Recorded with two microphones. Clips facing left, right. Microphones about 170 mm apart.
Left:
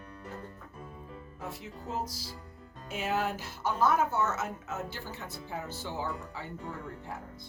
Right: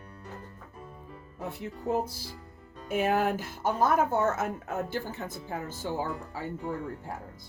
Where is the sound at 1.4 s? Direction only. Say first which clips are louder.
Right 8 dB; 55° right (ahead or behind).